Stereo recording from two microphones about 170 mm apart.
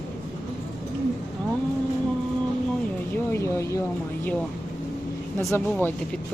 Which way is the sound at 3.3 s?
15° left (ahead or behind).